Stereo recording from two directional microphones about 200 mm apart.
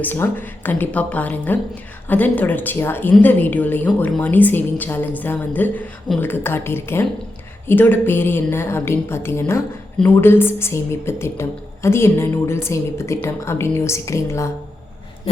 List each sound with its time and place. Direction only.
0.0 s a woman's voice: 10° left (ahead or behind)